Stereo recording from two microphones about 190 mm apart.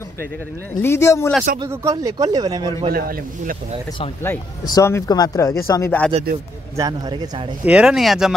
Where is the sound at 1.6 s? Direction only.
15° right (ahead or behind).